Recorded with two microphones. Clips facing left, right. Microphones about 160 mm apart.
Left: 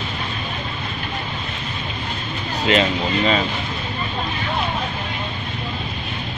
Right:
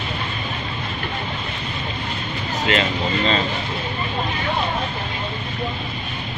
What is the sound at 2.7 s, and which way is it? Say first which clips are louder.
Speech: left 3 dB; 15° left (ahead or behind).